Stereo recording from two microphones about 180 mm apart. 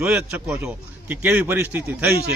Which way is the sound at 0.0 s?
10° right (ahead or behind).